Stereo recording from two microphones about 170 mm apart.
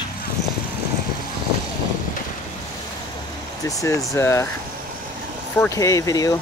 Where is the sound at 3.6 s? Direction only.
15° left (ahead or behind).